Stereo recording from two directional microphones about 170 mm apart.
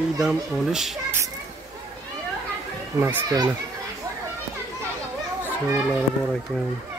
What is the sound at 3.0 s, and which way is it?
Speech, 20° right (ahead or behind).